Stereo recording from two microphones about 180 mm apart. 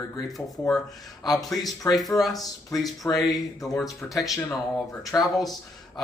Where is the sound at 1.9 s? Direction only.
Centre (ahead or behind).